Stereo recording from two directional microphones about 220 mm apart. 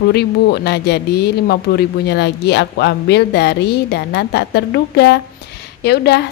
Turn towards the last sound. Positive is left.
turn(degrees=50)  # may be behind; listen again after turning